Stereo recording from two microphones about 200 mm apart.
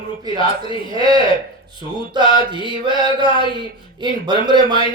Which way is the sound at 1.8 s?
20° right (ahead or behind).